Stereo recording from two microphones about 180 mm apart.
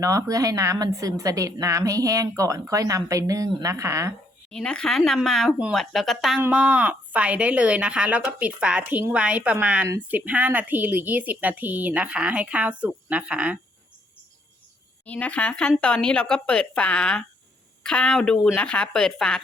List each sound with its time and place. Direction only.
0.0 s a woman's voice: 20° right (ahead or behind)
4.5 s speech: 5° left (ahead or behind)
15.0 s speech: 10° left (ahead or behind)